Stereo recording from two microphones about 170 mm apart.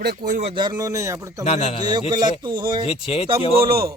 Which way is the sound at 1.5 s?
40° left (ahead or behind).